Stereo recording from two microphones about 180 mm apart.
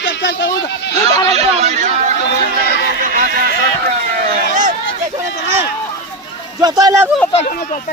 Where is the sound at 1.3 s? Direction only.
35° right (ahead or behind).